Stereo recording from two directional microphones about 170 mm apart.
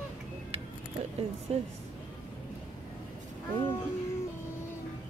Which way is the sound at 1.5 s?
35° right (ahead or behind).